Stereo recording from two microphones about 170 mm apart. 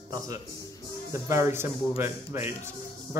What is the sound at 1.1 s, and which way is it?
Speech, 15° right (ahead or behind).